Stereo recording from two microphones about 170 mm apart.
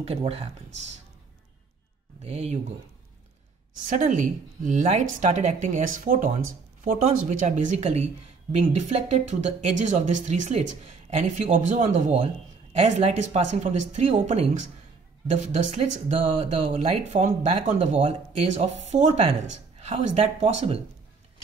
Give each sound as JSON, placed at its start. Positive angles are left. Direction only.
{"t": 0.0, "sound": "speech", "side_deg": -35}
{"t": 2.2, "sound": "speech", "side_deg": -35}
{"t": 3.8, "sound": "speech", "side_deg": -50}